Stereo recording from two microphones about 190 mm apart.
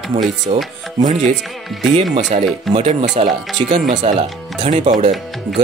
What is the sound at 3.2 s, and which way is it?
Speech, 35° right (ahead or behind).